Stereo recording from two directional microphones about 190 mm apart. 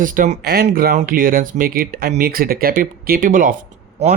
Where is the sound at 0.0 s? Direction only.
45° right (ahead or behind).